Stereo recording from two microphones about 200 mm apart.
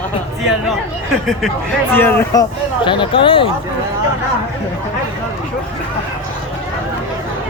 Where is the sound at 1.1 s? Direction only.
Centre (ahead or behind); by 3.5 s 25° left (ahead or behind).